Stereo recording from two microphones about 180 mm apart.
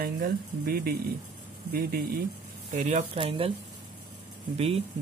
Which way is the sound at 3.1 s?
30° right (ahead or behind).